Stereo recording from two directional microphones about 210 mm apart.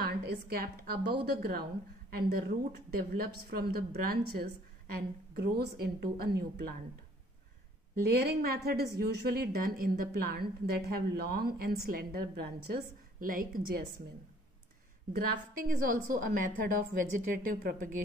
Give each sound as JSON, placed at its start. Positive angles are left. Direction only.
{"t": 0.0, "sound": "a woman's voice", "side_deg": -45}
{"t": 8.1, "sound": "a woman's voice", "side_deg": -45}
{"t": 15.1, "sound": "a woman's voice", "side_deg": -40}